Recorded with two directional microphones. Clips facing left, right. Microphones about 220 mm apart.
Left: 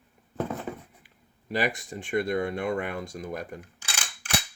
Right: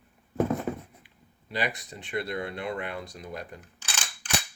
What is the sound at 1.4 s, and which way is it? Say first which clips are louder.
Speech: left 4 dB; 45° left (ahead or behind).